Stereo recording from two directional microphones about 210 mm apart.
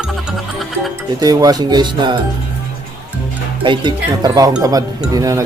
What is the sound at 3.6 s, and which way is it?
Speech, 20° right (ahead or behind).